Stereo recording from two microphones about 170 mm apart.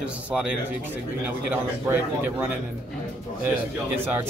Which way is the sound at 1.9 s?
15° right (ahead or behind).